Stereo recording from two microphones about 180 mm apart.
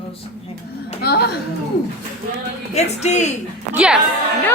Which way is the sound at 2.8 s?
40° left (ahead or behind).